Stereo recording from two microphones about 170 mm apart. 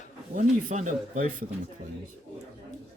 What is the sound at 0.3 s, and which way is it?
Speech, 45° right (ahead or behind).